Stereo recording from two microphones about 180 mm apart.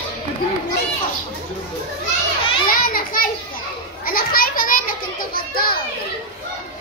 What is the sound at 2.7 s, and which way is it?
Children playing, 50° left (ahead or behind).